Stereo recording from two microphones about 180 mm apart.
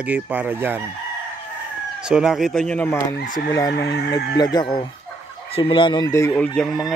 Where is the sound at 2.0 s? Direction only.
5° right (ahead or behind); by 3.2 s 10° left (ahead or behind).